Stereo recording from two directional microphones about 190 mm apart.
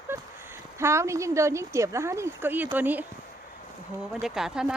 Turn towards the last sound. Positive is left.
turn(degrees=-5)  # may be behind; listen again after turning